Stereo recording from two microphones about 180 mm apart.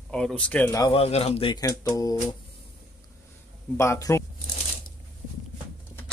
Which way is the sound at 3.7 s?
15° left (ahead or behind).